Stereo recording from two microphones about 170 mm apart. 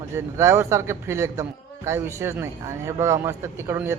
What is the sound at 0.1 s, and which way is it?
A man's voice, 15° right (ahead or behind).